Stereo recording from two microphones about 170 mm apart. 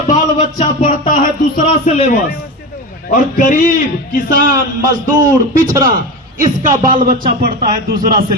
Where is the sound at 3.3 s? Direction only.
50° left (ahead or behind).